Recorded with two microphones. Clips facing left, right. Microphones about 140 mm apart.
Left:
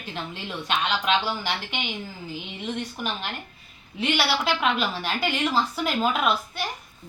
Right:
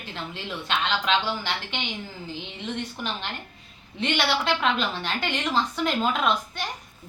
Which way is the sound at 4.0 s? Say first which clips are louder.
Left 1 dB; 5° left (ahead or behind).